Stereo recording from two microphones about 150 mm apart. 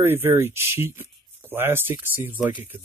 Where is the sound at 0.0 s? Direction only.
15° right (ahead or behind).